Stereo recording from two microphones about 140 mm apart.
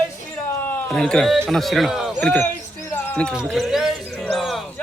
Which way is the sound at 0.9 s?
5° left (ahead or behind).